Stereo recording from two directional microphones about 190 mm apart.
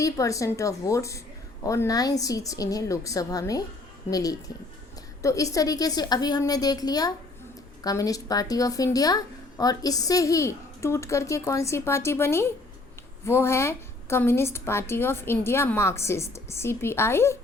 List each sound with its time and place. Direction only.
0.0 s a woman's voice: 15° left (ahead or behind)